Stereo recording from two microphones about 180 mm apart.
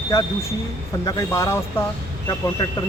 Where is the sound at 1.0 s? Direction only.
20° left (ahead or behind).